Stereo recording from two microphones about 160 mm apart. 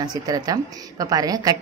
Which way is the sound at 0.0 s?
25° right (ahead or behind).